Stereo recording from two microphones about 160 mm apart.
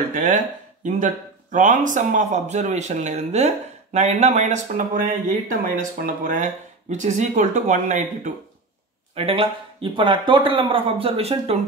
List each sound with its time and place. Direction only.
0.1 s speech: 55° right (ahead or behind)
9.1 s speech: 35° right (ahead or behind)